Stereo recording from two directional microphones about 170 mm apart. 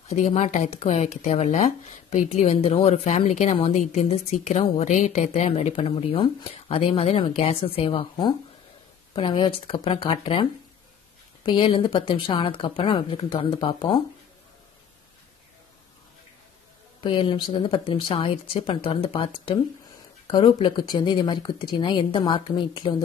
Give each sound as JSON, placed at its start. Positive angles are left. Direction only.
{"t": 0.1, "sound": "speech", "side_deg": 40}
{"t": 17.0, "sound": "speech", "side_deg": 30}